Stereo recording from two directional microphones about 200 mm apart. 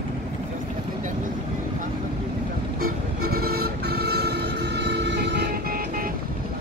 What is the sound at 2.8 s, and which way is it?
Vehicle, 50° right (ahead or behind).